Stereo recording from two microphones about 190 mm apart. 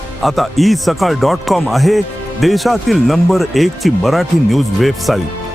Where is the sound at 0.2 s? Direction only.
Centre (ahead or behind).